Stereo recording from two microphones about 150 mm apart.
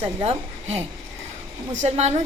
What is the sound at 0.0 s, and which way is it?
A woman's voice, 45° right (ahead or behind).